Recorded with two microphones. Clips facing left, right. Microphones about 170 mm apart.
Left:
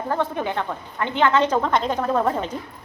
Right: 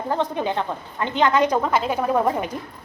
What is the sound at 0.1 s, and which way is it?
A woman's voice, 20° right (ahead or behind).